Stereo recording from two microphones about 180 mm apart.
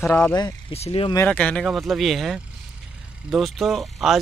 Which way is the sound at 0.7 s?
35° left (ahead or behind).